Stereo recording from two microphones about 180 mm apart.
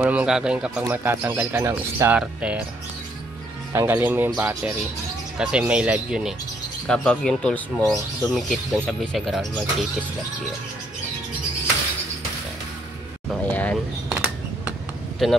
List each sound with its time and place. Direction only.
0.0 s speech: 5° right (ahead or behind)
3.7 s speech: 10° right (ahead or behind)
13.3 s a sound: 10° left (ahead or behind)
15.2 s speech: centre (ahead or behind)